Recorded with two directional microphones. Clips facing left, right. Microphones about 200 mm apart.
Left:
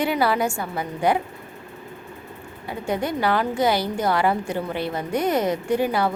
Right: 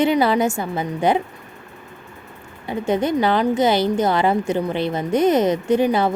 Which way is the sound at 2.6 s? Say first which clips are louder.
Right 5 dB; 20° right (ahead or behind).